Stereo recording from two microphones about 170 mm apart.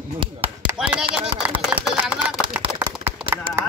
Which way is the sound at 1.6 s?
Centre (ahead or behind).